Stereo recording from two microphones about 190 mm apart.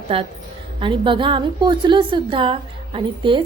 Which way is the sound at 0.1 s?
30° right (ahead or behind).